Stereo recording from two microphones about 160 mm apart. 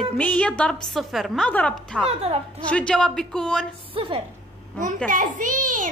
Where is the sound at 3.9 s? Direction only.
35° right (ahead or behind).